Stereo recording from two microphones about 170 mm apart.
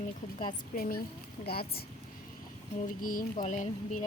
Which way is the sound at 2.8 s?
55° left (ahead or behind).